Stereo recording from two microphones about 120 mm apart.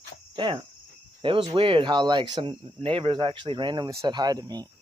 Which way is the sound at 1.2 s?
45° right (ahead or behind).